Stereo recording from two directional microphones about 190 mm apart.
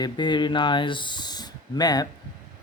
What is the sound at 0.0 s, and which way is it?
Speech, 25° left (ahead or behind).